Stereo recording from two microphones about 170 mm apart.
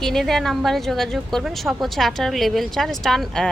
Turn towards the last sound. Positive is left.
turn(degrees=0)  # may be behind; listen again after turning